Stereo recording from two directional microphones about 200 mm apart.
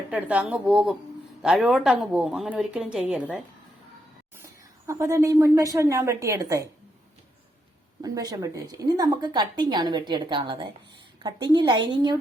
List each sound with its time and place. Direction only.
0.1 s a woman's voice: 5° right (ahead or behind)
4.9 s a woman's voice: 15° right (ahead or behind)
8.0 s a woman's voice: 20° right (ahead or behind)